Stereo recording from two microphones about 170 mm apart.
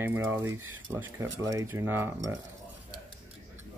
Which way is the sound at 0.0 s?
15° right (ahead or behind).